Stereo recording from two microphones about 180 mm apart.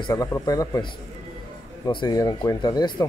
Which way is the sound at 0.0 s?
20° left (ahead or behind).